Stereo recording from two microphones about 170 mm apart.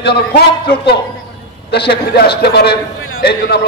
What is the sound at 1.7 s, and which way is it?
A man's voice, 70° left (ahead or behind).